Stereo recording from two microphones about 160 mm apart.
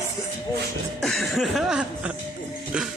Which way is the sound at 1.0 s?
Centre (ahead or behind).